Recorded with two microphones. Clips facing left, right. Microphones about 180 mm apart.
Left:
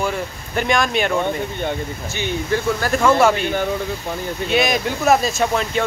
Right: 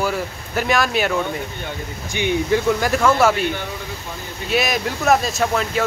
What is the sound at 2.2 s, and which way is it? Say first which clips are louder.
Speech: right 3 dB; 15° right (ahead or behind).